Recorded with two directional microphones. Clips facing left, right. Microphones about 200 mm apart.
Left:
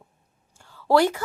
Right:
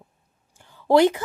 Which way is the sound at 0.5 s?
15° right (ahead or behind).